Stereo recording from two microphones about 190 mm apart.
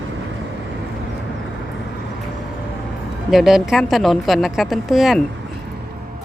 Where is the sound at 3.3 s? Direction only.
Centre (ahead or behind).